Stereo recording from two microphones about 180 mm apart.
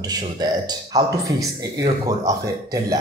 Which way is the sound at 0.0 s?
20° right (ahead or behind).